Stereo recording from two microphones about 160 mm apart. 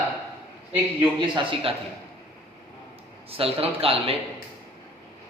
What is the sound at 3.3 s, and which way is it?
Speech, 35° right (ahead or behind).